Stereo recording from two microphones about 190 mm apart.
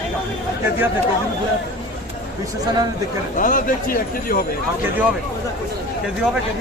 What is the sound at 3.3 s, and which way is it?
Speech, 45° left (ahead or behind).